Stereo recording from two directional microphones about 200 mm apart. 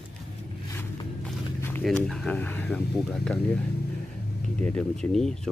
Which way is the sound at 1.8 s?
Centre (ahead or behind).